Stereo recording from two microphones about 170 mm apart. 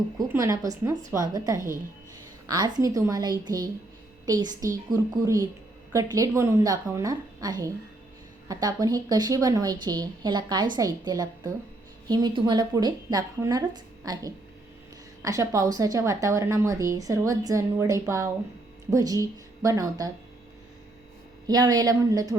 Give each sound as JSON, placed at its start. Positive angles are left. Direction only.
{"t": 0.2, "sound": "speech", "side_deg": -20}
{"t": 21.4, "sound": "speech", "side_deg": -25}